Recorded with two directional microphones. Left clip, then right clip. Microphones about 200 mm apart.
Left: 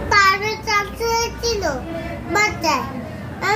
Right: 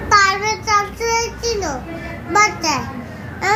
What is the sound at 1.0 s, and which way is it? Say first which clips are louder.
Child singing: right 1 dB; 25° left (ahead or behind).